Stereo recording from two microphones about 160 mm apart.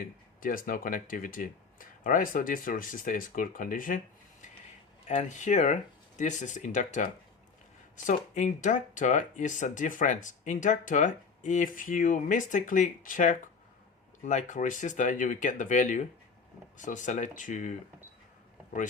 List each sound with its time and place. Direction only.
0.3 s speech: 60° left (ahead or behind)